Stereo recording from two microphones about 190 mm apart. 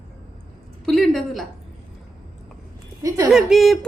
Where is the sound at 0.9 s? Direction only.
Centre (ahead or behind).